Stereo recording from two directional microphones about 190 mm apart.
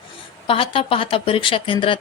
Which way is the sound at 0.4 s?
30° left (ahead or behind).